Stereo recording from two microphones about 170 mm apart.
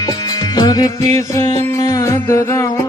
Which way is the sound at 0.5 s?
20° left (ahead or behind).